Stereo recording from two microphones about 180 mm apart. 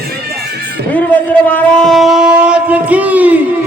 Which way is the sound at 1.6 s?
5° left (ahead or behind).